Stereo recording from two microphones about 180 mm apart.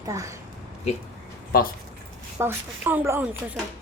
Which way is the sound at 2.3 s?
10° right (ahead or behind).